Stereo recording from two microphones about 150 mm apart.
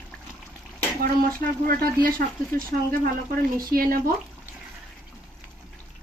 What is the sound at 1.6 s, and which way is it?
Speech, 75° right (ahead or behind).